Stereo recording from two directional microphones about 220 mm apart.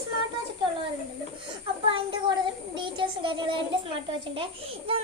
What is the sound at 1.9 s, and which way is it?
Child singing, 20° right (ahead or behind).